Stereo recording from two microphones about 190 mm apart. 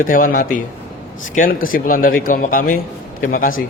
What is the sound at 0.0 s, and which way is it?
Speech, 45° left (ahead or behind).